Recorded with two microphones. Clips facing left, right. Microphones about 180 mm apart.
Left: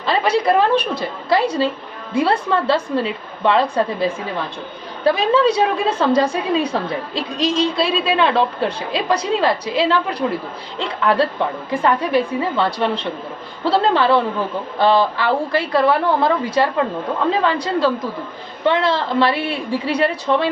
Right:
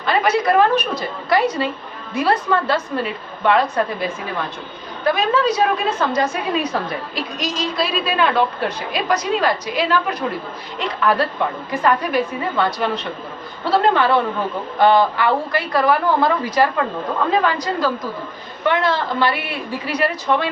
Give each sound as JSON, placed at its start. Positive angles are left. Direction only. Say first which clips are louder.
{"t": 0.0, "sound": "a woman's voice", "louder": "even", "side_deg": 30}